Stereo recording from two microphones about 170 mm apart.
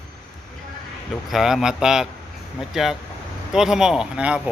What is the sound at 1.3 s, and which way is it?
A man's voice, centre (ahead or behind).